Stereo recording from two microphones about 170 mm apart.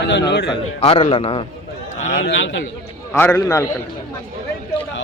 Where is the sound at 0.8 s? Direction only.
35° left (ahead or behind).